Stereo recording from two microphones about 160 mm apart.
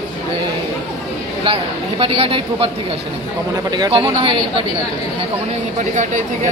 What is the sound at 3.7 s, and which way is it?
Speech, 25° right (ahead or behind).